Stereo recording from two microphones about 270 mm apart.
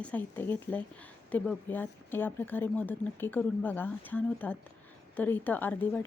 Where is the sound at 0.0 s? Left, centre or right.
Centre.